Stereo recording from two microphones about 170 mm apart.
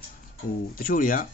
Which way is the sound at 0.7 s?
55° left (ahead or behind).